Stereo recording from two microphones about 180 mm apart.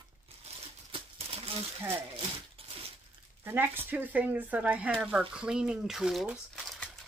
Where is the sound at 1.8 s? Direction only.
15° right (ahead or behind).